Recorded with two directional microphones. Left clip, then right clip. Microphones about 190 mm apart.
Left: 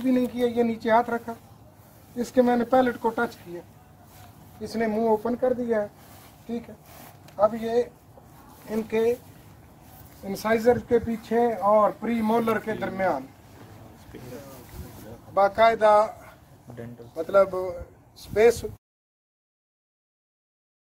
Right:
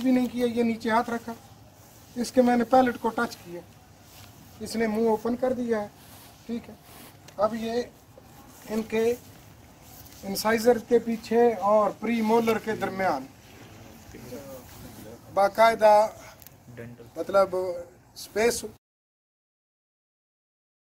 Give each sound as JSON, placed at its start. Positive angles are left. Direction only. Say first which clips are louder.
{"t": 0.0, "sound": "speech", "louder": "left 1 dB", "side_deg": 10}
{"t": 4.6, "sound": "speech", "louder": "left 1 dB", "side_deg": 0}
{"t": 7.3, "sound": "speech", "louder": "left 4 dB", "side_deg": 10}
{"t": 10.3, "sound": "speech", "louder": "left 1 dB", "side_deg": 15}
{"t": 14.1, "sound": "speech", "louder": "left 3 dB", "side_deg": 25}
{"t": 15.3, "sound": "speech", "louder": "left 1 dB", "side_deg": 5}